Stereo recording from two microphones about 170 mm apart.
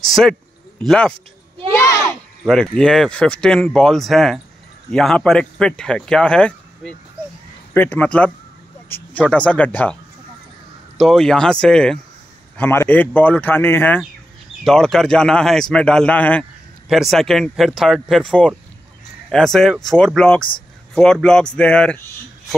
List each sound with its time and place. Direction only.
0.1 s speech: 5° left (ahead or behind)
1.7 s a sound: 20° left (ahead or behind)
2.4 s a man's voice: 5° left (ahead or behind)
8.8 s a sound: 10° left (ahead or behind)
9.3 s a man's voice: 10° left (ahead or behind)
11.0 s a man's voice: centre (ahead or behind)